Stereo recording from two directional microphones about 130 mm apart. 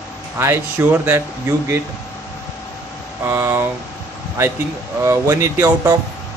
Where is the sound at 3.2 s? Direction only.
15° right (ahead or behind).